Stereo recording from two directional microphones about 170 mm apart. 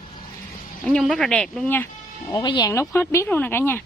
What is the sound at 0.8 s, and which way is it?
Speech, centre (ahead or behind).